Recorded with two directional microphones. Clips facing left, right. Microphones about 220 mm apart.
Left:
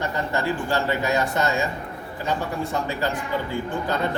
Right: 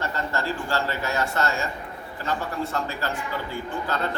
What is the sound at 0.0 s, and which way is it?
Speech, 15° left (ahead or behind).